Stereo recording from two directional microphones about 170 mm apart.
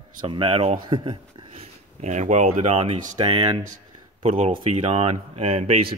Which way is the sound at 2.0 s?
45° right (ahead or behind).